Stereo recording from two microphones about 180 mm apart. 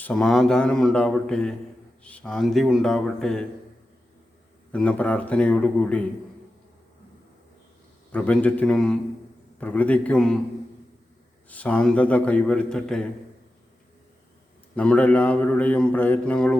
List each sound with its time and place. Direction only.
0.0 s speech: 5° left (ahead or behind)
4.7 s speech: 5° left (ahead or behind)
8.1 s speech: 5° left (ahead or behind)
11.4 s speech: 10° left (ahead or behind)
14.8 s speech: 5° left (ahead or behind)